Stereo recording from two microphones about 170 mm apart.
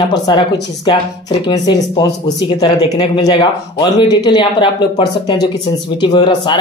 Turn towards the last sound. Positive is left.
turn(degrees=25)  # may be behind; listen again after turning